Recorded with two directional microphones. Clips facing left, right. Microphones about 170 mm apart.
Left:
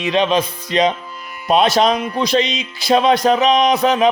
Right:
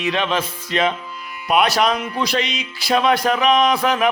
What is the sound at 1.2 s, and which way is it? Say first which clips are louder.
Music: left 1 dB; 45° left (ahead or behind).